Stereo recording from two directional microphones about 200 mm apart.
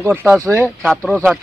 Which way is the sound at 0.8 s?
5° left (ahead or behind).